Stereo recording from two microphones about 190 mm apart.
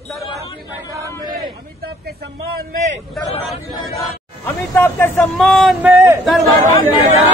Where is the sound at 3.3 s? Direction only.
30° left (ahead or behind).